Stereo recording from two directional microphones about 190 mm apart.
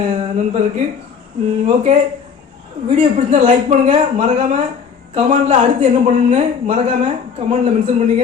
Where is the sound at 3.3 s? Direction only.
40° right (ahead or behind).